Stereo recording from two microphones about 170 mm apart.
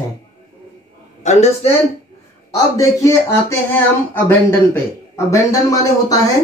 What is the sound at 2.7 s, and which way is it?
A woman's voice, 15° left (ahead or behind).